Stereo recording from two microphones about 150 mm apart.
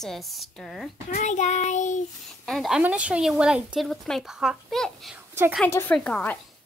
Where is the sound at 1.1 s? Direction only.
55° left (ahead or behind).